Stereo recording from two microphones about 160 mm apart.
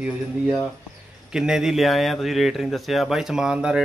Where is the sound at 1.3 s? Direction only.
5° right (ahead or behind).